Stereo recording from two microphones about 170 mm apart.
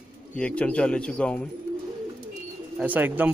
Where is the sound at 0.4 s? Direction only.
5° left (ahead or behind).